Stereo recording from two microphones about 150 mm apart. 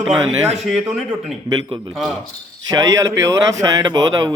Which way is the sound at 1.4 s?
30° right (ahead or behind).